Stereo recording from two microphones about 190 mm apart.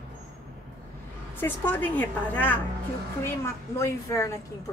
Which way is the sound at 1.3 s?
10° left (ahead or behind).